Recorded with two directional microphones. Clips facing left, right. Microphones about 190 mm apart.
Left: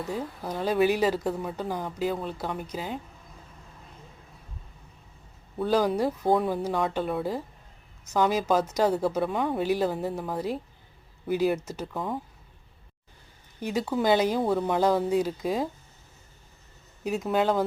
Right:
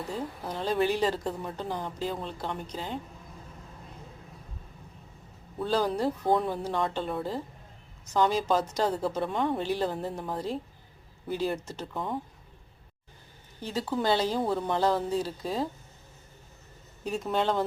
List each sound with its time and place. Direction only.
0.1 s a woman's voice: 10° left (ahead or behind)
5.6 s a woman's voice: 10° left (ahead or behind)
13.6 s a woman's voice: 15° left (ahead or behind)
17.0 s a woman's voice: 10° left (ahead or behind)